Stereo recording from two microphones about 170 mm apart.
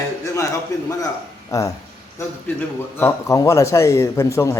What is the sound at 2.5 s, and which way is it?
A man's voice, 15° left (ahead or behind).